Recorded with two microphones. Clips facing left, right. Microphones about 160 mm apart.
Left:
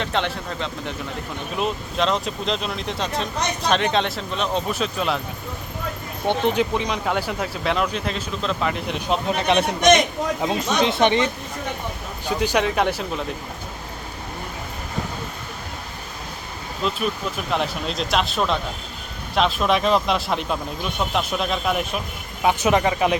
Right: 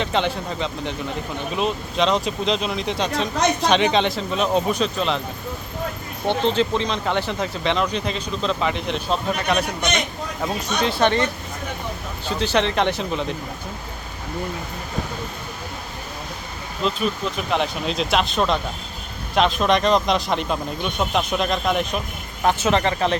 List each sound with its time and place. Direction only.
0.0 s speech: centre (ahead or behind)
6.2 s speech: 15° left (ahead or behind)
9.0 s speech: 25° left (ahead or behind)
12.3 s speech: 10° left (ahead or behind)
16.8 s speech: centre (ahead or behind)